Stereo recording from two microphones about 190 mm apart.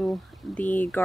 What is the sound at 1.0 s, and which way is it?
Speech, 10° left (ahead or behind).